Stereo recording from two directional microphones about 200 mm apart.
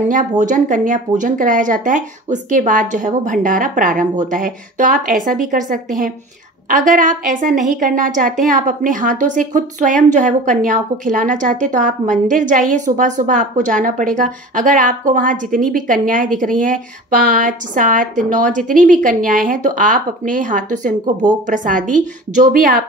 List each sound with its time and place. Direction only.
0.4 s a woman's voice: 40° right (ahead or behind)